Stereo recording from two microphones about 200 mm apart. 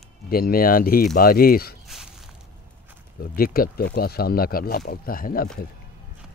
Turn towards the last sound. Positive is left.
turn(degrees=45)  # may be behind; listen again after turning